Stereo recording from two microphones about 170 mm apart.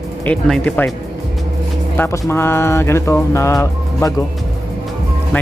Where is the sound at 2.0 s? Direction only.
15° left (ahead or behind).